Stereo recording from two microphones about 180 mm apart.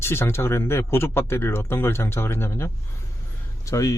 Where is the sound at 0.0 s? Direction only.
15° left (ahead or behind).